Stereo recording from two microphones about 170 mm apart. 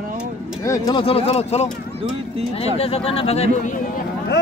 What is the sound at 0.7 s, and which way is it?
Speech, 20° left (ahead or behind).